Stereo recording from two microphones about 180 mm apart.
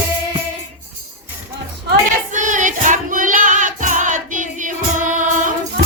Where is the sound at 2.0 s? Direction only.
45° right (ahead or behind).